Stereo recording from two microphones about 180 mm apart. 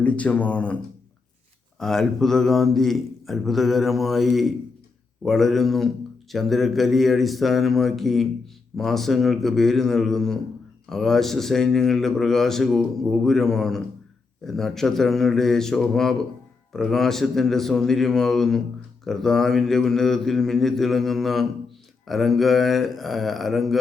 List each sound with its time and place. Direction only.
0.0 s speech: 10° left (ahead or behind)
1.8 s a man's voice: centre (ahead or behind)